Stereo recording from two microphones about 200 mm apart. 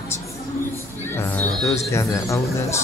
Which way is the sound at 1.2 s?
10° left (ahead or behind).